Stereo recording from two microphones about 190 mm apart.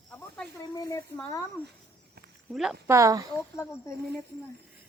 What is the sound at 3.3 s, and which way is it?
Speech, 15° left (ahead or behind).